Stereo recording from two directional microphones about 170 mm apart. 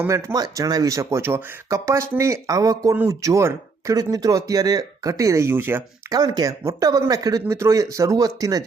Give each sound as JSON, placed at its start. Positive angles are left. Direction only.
{"t": 0.0, "sound": "speech", "side_deg": -15}
{"t": 6.1, "sound": "speech", "side_deg": -25}